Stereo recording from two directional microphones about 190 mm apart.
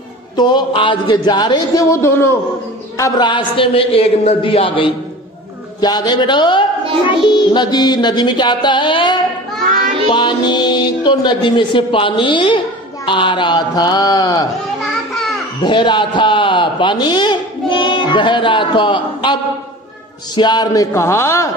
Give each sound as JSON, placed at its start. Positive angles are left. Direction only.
{"t": 0.4, "sound": "speech", "side_deg": 25}
{"t": 9.7, "sound": "child singing", "side_deg": -45}
{"t": 10.0, "sound": "speech", "side_deg": 25}
{"t": 15.6, "sound": "a man's voice", "side_deg": 25}
{"t": 20.3, "sound": "speech", "side_deg": 20}